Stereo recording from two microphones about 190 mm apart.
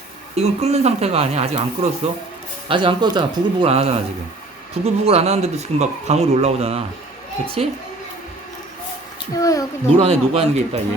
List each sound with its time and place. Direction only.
0.3 s speech: 35° right (ahead or behind)
9.3 s a child's voice: 20° left (ahead or behind)
9.9 s speech: 30° right (ahead or behind)